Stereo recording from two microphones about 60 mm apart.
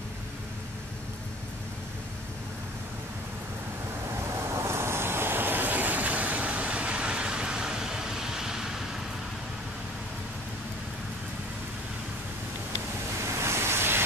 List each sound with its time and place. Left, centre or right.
4.5 s vehicle: right; by 8.8 s centre
13.2 s waves: right